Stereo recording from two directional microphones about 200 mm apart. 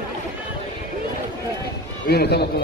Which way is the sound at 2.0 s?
55° left (ahead or behind).